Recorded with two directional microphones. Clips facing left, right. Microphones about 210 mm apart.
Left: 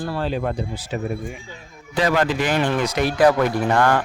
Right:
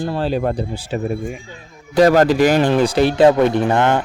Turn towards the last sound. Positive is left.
turn(degrees=-25)  # may be behind; listen again after turning